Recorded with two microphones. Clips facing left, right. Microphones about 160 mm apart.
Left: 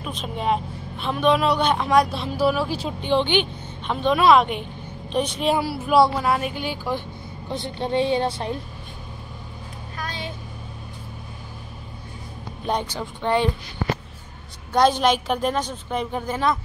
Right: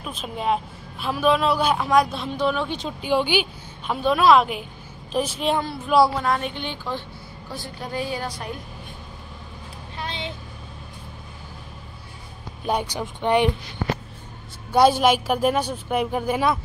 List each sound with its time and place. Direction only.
0.0 s a woman's voice: centre (ahead or behind)
3.0 s a woman's voice: 10° right (ahead or behind); by 7.0 s 10° left (ahead or behind)
7.4 s a woman's voice: 20° left (ahead or behind)
9.9 s vehicle: 25° right (ahead or behind)
12.6 s a woman's voice: 10° right (ahead or behind)
14.7 s a woman's voice: 10° right (ahead or behind)